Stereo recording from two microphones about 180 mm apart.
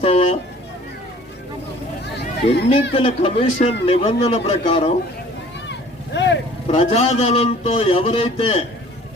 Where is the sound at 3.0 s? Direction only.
30° left (ahead or behind).